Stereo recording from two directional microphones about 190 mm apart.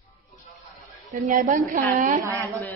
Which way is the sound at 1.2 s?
45° right (ahead or behind).